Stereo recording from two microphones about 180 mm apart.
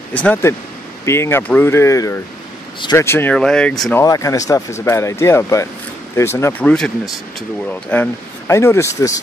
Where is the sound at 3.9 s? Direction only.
20° left (ahead or behind).